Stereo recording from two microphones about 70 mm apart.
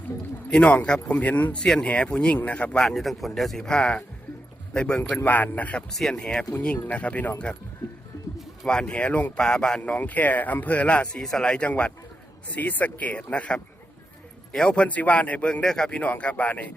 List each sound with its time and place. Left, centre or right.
0.5 s a man's voice: centre
1.6 s speech: centre
2.7 s a man's voice: centre; by 5.8 s left
5.9 s a man's voice: centre
8.6 s a man's voice: centre